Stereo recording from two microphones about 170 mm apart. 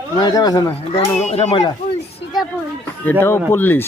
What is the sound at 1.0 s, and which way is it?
Speech, 40° left (ahead or behind).